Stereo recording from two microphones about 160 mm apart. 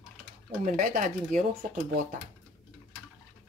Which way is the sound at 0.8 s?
55° right (ahead or behind).